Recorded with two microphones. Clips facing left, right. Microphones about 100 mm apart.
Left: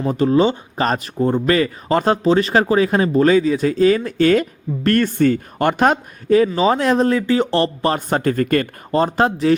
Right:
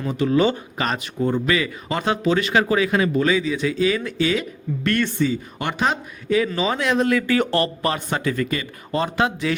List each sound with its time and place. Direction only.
0.1 s speech: 35° left (ahead or behind)
7.9 s speech: 45° left (ahead or behind)
8.9 s speech: 35° left (ahead or behind)